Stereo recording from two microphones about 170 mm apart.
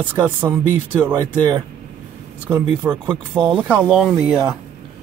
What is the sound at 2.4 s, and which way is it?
Speech, 10° right (ahead or behind).